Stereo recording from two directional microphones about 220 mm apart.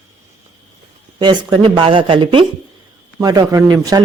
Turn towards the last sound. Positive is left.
turn(degrees=-15)  # may be behind; listen again after turning